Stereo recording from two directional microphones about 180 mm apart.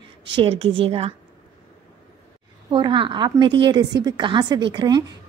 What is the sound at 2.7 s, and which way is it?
A woman's voice, 25° right (ahead or behind).